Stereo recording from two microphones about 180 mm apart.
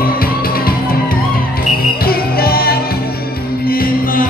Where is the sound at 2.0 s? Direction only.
55° left (ahead or behind).